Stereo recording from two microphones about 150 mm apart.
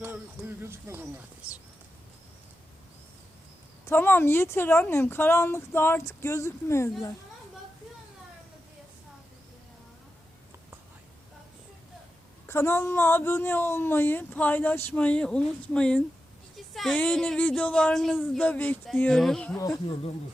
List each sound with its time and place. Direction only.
0.0 s speech: 15° right (ahead or behind)
3.8 s speech: 15° left (ahead or behind)
12.5 s speech: 15° left (ahead or behind)
19.9 s speech: 40° left (ahead or behind)